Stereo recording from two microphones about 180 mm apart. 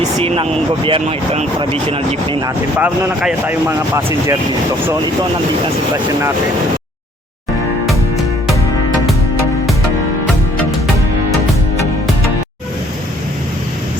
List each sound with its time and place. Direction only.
0.2 s speech: 35° right (ahead or behind)
2.7 s speech: 10° right (ahead or behind)